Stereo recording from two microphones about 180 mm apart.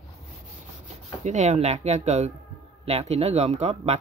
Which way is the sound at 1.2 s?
40° right (ahead or behind).